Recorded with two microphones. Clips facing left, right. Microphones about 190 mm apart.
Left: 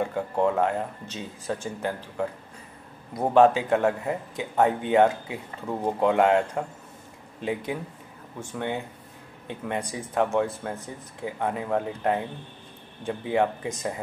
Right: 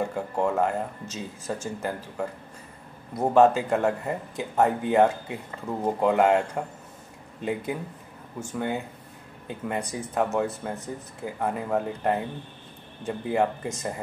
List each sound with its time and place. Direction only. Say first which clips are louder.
0.0 s speech: left 2 dB; centre (ahead or behind)